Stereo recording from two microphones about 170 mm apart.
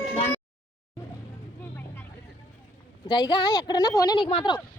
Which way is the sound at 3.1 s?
25° left (ahead or behind).